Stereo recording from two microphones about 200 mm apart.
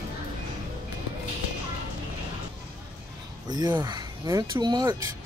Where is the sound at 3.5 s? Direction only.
20° right (ahead or behind).